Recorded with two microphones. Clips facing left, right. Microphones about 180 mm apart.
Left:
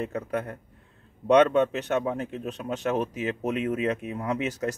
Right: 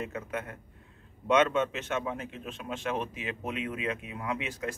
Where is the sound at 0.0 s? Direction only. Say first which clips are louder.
Left 6 dB; 35° left (ahead or behind).